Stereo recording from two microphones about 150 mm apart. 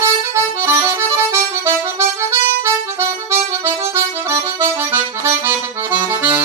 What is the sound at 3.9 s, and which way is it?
Accordion, 15° right (ahead or behind).